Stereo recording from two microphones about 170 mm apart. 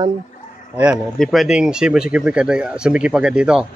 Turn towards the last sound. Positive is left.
turn(degrees=-5)  # may be behind; listen again after turning